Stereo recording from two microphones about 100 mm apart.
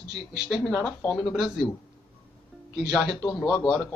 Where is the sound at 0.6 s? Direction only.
15° left (ahead or behind).